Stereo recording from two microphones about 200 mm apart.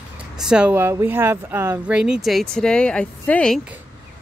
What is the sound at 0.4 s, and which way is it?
A woman's voice, 5° right (ahead or behind).